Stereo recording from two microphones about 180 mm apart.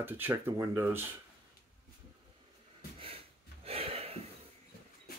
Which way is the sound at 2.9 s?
30° right (ahead or behind).